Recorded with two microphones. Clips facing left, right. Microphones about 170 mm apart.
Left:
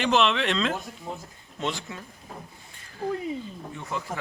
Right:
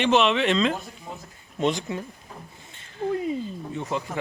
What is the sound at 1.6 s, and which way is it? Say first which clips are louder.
Speech: right 7 dB; 20° right (ahead or behind).